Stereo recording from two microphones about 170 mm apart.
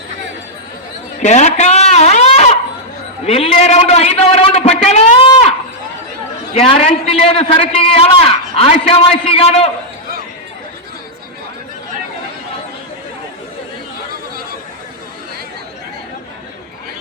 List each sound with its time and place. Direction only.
1.2 s a man's voice: 45° left (ahead or behind)